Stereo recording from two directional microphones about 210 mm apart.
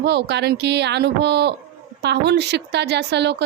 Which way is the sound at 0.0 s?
55° right (ahead or behind).